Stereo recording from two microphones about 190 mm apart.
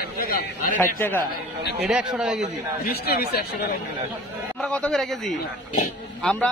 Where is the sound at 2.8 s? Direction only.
55° left (ahead or behind).